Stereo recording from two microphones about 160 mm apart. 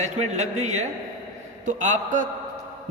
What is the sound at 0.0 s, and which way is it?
A man's voice, 45° right (ahead or behind).